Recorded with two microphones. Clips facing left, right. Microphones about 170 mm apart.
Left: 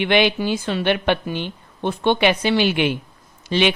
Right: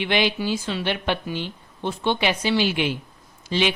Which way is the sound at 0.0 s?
60° left (ahead or behind).